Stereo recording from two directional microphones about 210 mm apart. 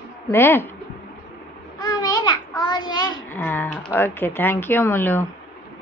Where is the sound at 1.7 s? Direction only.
20° left (ahead or behind).